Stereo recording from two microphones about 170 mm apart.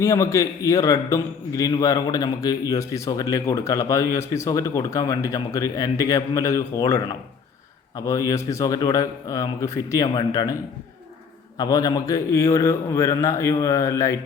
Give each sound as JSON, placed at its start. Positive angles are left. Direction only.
{"t": 0.0, "sound": "a man's voice", "side_deg": 15}
{"t": 11.5, "sound": "a man's voice", "side_deg": 25}